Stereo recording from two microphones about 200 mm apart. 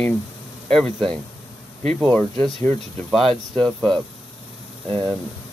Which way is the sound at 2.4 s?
Centre (ahead or behind).